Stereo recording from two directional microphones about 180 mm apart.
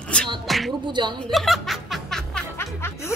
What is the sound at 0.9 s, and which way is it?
Speech, 25° right (ahead or behind).